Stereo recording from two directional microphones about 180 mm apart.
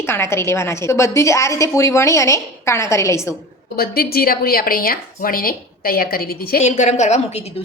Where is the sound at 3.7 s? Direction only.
55° left (ahead or behind).